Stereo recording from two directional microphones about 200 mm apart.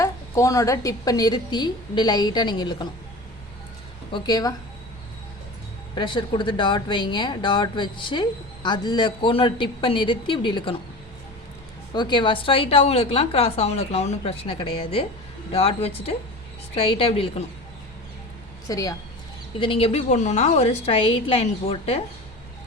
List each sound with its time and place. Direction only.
0.0 s speech: 15° left (ahead or behind)
4.1 s speech: 20° left (ahead or behind)
5.9 s speech: 25° left (ahead or behind)
11.9 s speech: 25° left (ahead or behind)
18.7 s a woman's voice: 15° left (ahead or behind)